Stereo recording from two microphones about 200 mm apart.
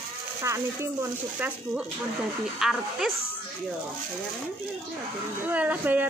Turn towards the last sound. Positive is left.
turn(degrees=-10)  # may be behind; listen again after turning